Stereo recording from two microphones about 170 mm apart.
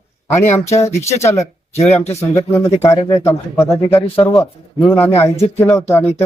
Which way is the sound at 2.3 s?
20° left (ahead or behind).